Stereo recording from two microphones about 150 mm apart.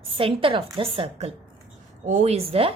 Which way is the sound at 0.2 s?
35° right (ahead or behind).